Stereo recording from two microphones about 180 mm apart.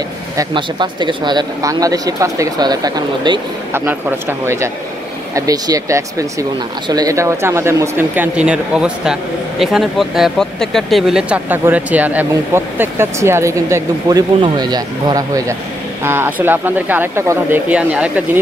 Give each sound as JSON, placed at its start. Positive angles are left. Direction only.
{"t": 0.4, "sound": "speech", "side_deg": -25}